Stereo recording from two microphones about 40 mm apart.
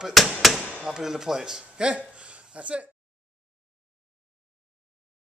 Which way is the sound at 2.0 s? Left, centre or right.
Right.